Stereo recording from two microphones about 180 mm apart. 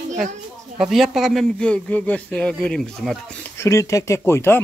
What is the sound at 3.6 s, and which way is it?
Speech, 15° left (ahead or behind).